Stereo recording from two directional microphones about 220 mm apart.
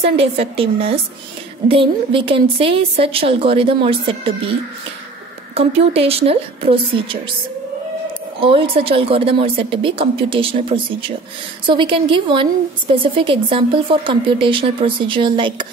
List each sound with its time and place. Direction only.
0.0 s speech: 25° right (ahead or behind)
5.5 s speech: 25° right (ahead or behind)
8.4 s speech: 25° right (ahead or behind)